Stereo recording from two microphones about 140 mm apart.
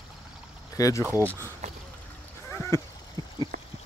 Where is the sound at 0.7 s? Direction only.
25° left (ahead or behind).